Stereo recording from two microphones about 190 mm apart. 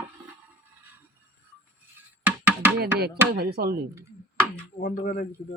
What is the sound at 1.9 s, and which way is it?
Music, 10° right (ahead or behind).